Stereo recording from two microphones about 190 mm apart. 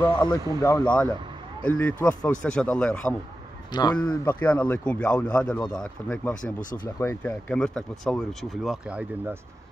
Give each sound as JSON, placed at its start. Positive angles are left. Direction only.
{"t": 0.1, "sound": "speech", "side_deg": 20}
{"t": 3.7, "sound": "speech", "side_deg": 20}
{"t": 4.1, "sound": "speech", "side_deg": 10}
{"t": 6.6, "sound": "speech", "side_deg": 45}
{"t": 7.0, "sound": "speech", "side_deg": 10}